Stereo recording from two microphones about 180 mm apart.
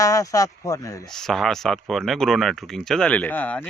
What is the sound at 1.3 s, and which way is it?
Speech, centre (ahead or behind).